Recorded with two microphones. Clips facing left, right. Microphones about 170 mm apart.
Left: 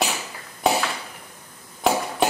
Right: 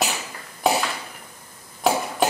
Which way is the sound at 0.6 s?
Centre (ahead or behind).